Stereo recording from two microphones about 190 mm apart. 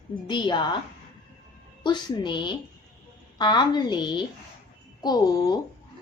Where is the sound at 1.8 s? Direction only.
25° left (ahead or behind).